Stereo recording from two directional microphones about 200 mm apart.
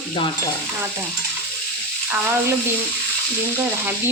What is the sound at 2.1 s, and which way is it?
Speech, 10° right (ahead or behind).